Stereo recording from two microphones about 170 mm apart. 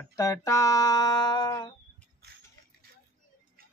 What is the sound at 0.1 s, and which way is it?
Speech, 20° left (ahead or behind).